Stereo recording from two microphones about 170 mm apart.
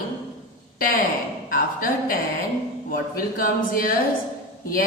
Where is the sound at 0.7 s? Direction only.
55° left (ahead or behind).